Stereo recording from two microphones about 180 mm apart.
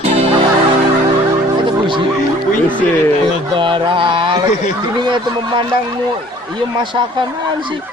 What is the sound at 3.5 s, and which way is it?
Carnatic music, 25° right (ahead or behind).